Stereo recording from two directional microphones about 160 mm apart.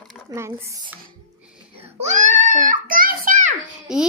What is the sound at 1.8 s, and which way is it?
Baby cry, 50° right (ahead or behind).